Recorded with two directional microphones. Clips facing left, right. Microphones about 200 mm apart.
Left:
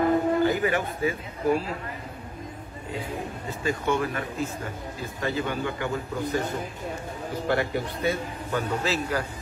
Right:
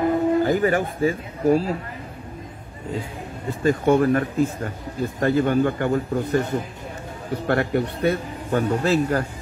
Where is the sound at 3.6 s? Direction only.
50° right (ahead or behind).